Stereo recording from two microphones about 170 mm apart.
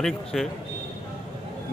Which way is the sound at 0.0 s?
Centre (ahead or behind).